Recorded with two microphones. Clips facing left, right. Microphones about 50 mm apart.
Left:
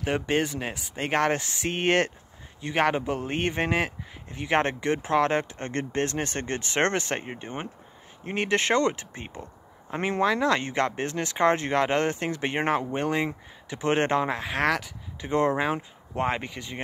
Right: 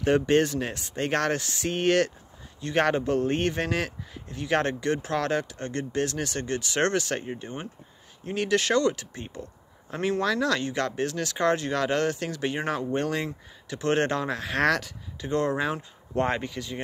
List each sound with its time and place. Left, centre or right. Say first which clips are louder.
0.0 s speech: right 4 dB; centre; by 2.1 s left
2.6 s speech: even; centre; by 12.8 s left
12.8 s speech: left 1 dB; centre
14.5 s speech: right 3 dB; centre
15.1 s speech: left 2 dB; left
16.2 s speech: right 1 dB; centre
16.4 s speech: right 2 dB; left